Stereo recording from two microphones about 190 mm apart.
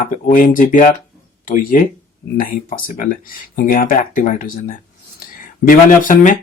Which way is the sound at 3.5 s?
45° left (ahead or behind).